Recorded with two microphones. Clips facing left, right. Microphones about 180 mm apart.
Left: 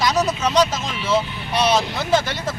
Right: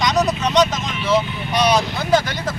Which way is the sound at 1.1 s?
30° left (ahead or behind).